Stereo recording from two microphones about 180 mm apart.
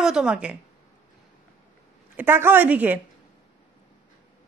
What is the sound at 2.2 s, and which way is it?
Speech, 10° right (ahead or behind).